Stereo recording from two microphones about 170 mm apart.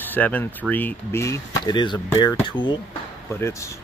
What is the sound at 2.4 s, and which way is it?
Speech, 25° left (ahead or behind).